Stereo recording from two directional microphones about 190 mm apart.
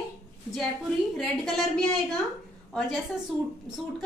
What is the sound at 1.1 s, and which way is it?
Speech, centre (ahead or behind).